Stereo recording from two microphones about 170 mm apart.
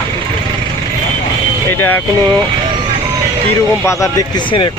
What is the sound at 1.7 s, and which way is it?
Speech, 10° left (ahead or behind).